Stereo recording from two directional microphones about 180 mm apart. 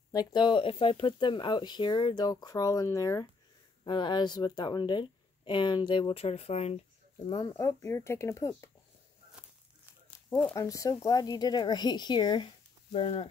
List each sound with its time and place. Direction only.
0.1 s speech: 25° left (ahead or behind)
10.3 s speech: 15° left (ahead or behind); by 13.3 s 30° left (ahead or behind)